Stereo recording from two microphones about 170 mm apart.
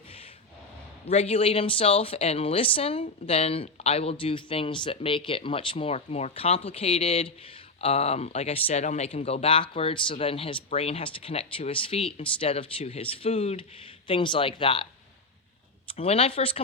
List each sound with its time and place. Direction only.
1.0 s speech: 35° left (ahead or behind)
16.0 s speech: 35° left (ahead or behind)